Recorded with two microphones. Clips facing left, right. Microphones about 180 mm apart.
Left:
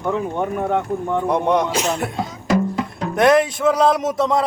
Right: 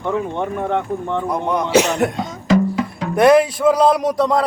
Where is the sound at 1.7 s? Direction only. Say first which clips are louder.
Right 7 dB; 70° right (ahead or behind).